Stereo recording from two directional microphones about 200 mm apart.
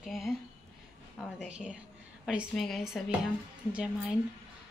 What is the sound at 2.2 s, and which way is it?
Speech, centre (ahead or behind).